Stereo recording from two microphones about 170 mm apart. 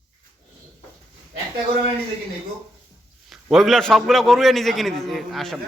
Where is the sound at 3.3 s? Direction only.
Centre (ahead or behind).